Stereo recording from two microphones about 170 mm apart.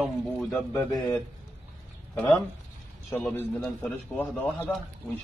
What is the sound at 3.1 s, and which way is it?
Speech, 10° left (ahead or behind).